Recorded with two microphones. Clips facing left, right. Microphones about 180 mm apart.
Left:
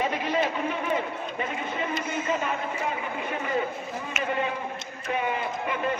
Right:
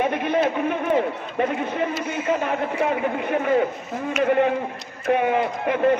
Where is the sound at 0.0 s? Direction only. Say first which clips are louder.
Right 5 dB; 60° right (ahead or behind).